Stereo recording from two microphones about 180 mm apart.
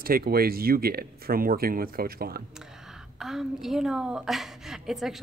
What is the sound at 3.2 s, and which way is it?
A woman's voice, centre (ahead or behind).